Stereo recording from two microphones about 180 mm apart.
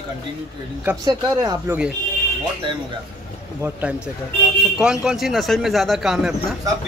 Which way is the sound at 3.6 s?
10° right (ahead or behind).